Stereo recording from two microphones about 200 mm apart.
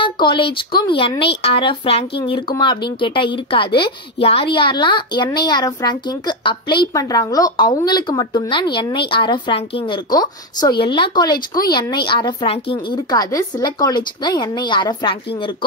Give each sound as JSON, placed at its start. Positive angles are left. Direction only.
{"t": 0.0, "sound": "a woman's voice", "side_deg": 25}